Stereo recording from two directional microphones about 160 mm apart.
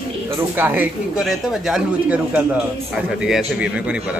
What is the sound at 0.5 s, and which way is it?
A man's voice, 10° right (ahead or behind).